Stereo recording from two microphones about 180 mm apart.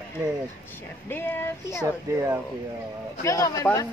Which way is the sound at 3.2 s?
15° left (ahead or behind).